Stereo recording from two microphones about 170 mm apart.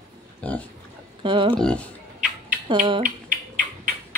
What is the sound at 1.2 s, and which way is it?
Speech, 30° right (ahead or behind).